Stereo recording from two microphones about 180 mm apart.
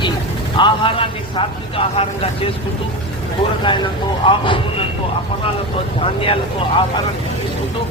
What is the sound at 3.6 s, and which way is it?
Speech, 25° left (ahead or behind).